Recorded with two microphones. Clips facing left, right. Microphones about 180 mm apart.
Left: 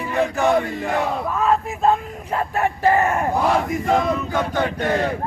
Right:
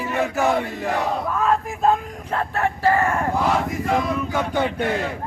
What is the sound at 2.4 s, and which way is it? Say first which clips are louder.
Yell: left 2 dB; 15° left (ahead or behind).